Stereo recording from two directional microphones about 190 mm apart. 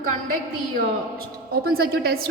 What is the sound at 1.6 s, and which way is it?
Speech, 55° right (ahead or behind).